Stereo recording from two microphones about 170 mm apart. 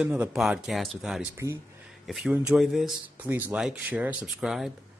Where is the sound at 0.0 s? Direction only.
5° right (ahead or behind).